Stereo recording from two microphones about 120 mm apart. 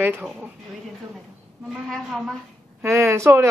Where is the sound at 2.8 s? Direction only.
25° right (ahead or behind).